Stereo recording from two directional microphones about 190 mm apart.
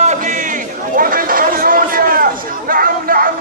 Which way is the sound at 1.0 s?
50° right (ahead or behind).